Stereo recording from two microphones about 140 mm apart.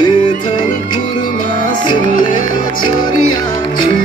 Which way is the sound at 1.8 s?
35° left (ahead or behind).